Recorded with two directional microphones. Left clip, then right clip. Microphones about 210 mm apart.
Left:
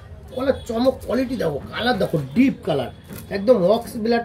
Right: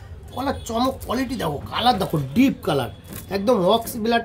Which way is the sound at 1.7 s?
60° right (ahead or behind).